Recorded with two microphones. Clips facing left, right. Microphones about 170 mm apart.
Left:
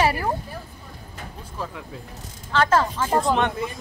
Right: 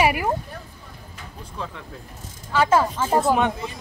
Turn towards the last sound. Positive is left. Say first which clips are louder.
# right 1 dB
turn(degrees=-5)  # may be behind; listen again after turning